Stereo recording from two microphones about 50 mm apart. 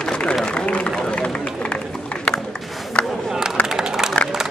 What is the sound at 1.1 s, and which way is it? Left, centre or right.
Run, left.